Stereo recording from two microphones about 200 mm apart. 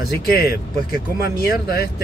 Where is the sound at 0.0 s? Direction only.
50° left (ahead or behind).